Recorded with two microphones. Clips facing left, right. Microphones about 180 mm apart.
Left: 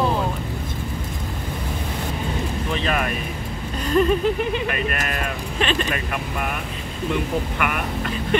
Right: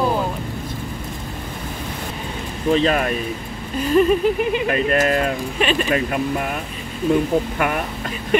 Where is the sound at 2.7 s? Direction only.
35° right (ahead or behind).